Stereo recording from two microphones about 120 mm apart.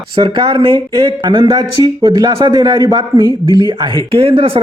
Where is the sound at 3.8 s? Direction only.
45° right (ahead or behind).